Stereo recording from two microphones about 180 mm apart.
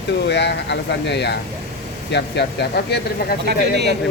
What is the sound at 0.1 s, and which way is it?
Speech, 75° left (ahead or behind).